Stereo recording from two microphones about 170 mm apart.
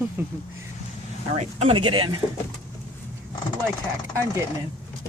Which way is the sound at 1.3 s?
40° right (ahead or behind).